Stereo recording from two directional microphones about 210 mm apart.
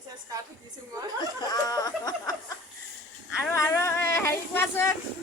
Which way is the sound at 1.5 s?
15° left (ahead or behind).